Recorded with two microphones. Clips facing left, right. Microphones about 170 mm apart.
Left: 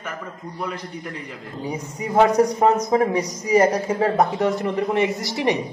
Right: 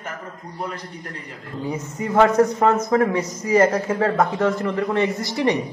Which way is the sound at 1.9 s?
15° left (ahead or behind).